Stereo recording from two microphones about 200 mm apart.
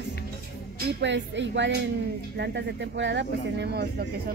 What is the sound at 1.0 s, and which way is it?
Speech, 65° right (ahead or behind).